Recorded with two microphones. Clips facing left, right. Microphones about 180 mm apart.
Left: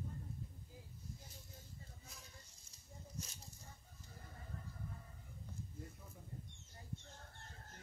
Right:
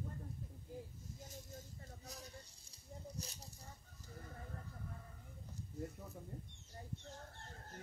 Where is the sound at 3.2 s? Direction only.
35° right (ahead or behind).